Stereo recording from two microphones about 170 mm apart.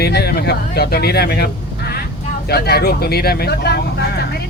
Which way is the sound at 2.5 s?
70° left (ahead or behind).